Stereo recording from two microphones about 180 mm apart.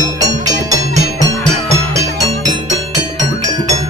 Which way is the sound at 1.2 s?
20° left (ahead or behind).